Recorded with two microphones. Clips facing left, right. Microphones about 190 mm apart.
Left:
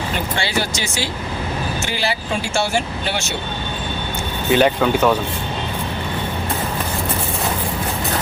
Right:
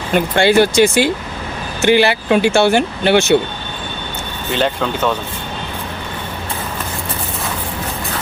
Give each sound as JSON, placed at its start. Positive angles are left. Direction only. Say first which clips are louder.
{"t": 0.3, "sound": "speech", "louder": "right 16 dB", "side_deg": -55}
{"t": 4.5, "sound": "speech", "louder": "left 3 dB", "side_deg": 10}